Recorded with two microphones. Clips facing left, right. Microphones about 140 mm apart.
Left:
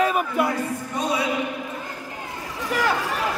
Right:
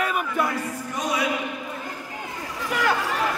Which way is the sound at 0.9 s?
30° left (ahead or behind).